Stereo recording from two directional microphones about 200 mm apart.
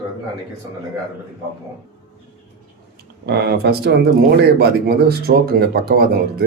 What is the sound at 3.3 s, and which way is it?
Speech, 55° right (ahead or behind).